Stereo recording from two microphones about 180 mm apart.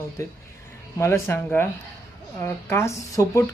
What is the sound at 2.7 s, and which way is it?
Speech, 15° left (ahead or behind).